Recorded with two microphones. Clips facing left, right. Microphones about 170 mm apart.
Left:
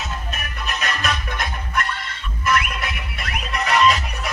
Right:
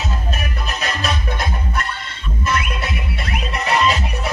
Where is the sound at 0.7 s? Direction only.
30° right (ahead or behind).